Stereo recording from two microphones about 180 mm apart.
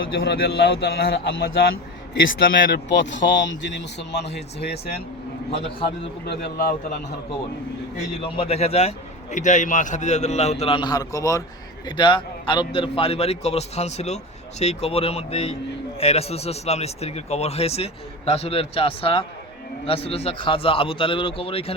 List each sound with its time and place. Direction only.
0.2 s a man's voice: 65° left (ahead or behind)
6.2 s a man's voice: 65° left (ahead or behind)
8.2 s a man's voice: 35° left (ahead or behind)